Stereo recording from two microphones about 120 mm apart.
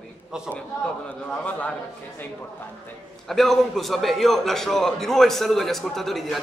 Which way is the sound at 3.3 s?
Centre (ahead or behind).